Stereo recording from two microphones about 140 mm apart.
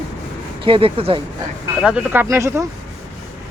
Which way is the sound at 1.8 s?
10° right (ahead or behind).